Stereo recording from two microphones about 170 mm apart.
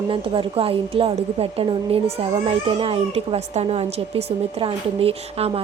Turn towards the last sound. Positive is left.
turn(degrees=-35)  # may be behind; listen again after turning